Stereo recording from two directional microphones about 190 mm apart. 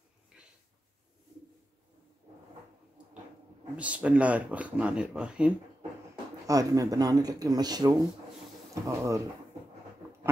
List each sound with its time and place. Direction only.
3.7 s speech: 5° right (ahead or behind)
6.4 s speech: 20° right (ahead or behind)